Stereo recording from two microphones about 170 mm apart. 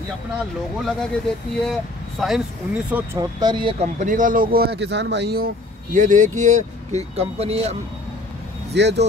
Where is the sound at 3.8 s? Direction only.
45° right (ahead or behind); by 5.5 s 80° right.